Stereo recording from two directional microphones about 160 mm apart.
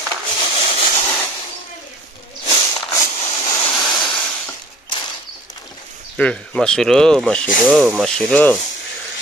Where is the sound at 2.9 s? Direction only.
20° left (ahead or behind).